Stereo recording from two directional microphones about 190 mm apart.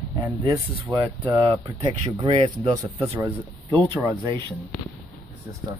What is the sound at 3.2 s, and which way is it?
Speech, 20° right (ahead or behind).